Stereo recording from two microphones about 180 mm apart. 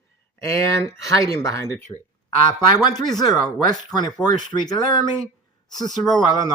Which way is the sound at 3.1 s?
Centre (ahead or behind).